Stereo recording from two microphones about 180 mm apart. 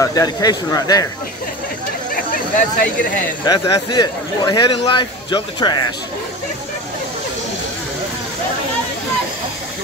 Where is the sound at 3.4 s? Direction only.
20° left (ahead or behind).